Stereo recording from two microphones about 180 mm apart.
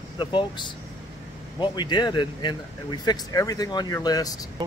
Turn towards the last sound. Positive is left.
turn(degrees=20)  # may be behind; listen again after turning